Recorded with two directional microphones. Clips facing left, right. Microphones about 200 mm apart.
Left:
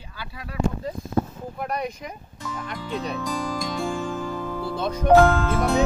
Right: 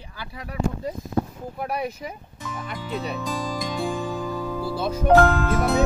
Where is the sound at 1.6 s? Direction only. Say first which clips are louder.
Right 1 dB; 5° right (ahead or behind).